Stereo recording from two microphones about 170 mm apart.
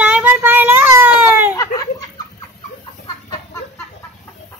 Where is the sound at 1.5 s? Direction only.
20° left (ahead or behind).